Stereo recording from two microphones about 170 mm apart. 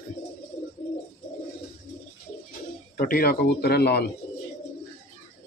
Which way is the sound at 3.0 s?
60° left (ahead or behind).